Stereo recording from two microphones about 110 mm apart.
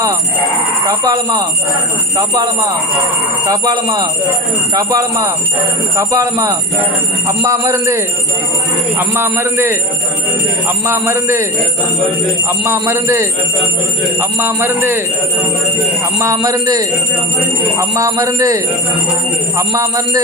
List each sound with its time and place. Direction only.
0.9 s speech: 35° right (ahead or behind)
10.8 s speech: 25° right (ahead or behind)
12.5 s speech: 25° right (ahead or behind)
16.1 s speech: 30° right (ahead or behind)